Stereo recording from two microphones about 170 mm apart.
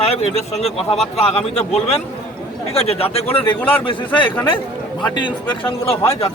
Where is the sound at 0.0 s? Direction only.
35° left (ahead or behind).